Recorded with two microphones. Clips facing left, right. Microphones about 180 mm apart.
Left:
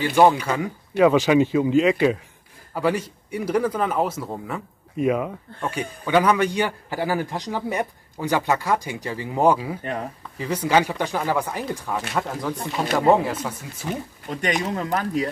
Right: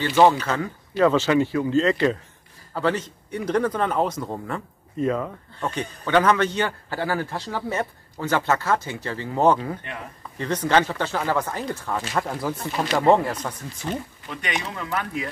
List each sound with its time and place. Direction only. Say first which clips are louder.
0.0 s speech: left 1 dB; 15° left (ahead or behind)
14.2 s speech: left 6 dB; 40° left (ahead or behind)